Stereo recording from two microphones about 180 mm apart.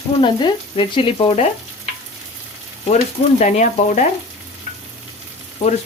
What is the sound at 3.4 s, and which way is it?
Speech, 45° left (ahead or behind).